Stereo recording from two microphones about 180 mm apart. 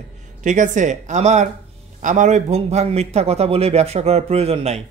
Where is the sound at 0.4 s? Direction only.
45° right (ahead or behind).